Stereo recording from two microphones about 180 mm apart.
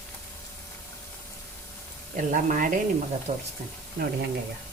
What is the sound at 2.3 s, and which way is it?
Speech, 45° right (ahead or behind).